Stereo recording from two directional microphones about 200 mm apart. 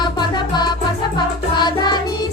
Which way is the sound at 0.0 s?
20° left (ahead or behind).